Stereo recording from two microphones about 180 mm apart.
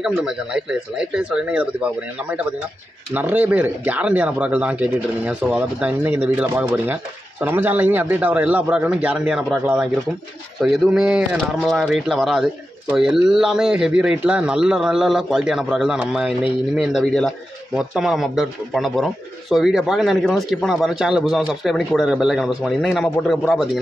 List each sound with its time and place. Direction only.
0.0 s speech: 5° right (ahead or behind)
3.1 s speech: 10° right (ahead or behind)